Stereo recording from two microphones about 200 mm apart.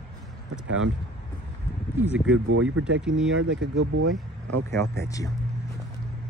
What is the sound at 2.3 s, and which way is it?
Speech, 90° right.